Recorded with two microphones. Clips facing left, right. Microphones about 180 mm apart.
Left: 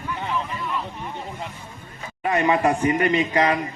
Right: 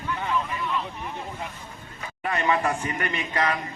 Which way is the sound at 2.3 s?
20° left (ahead or behind).